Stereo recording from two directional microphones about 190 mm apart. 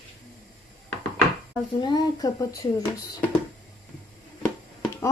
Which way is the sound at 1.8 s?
20° left (ahead or behind).